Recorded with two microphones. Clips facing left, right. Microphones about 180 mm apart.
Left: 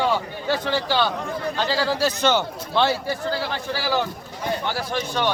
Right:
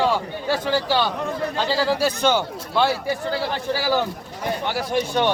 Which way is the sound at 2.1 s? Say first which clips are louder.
Right 1 dB; 10° right (ahead or behind).